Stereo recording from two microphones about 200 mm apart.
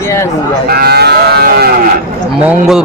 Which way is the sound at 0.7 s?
50° right (ahead or behind).